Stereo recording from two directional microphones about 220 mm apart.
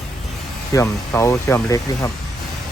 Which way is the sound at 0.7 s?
15° left (ahead or behind).